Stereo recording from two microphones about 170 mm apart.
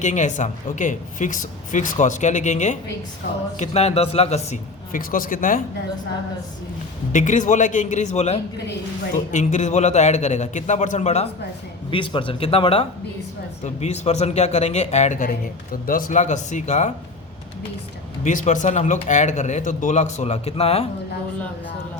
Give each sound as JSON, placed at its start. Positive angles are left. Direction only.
{"t": 0.0, "sound": "speech", "side_deg": 45}
{"t": 7.1, "sound": "speech", "side_deg": 45}
{"t": 11.9, "sound": "a man's voice", "side_deg": 30}
{"t": 18.2, "sound": "speech", "side_deg": 45}